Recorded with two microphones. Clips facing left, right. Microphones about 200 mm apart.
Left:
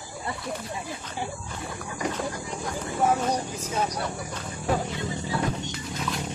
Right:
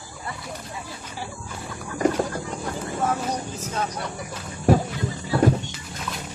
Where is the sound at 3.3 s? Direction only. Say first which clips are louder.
Left 1 dB; 10° left (ahead or behind).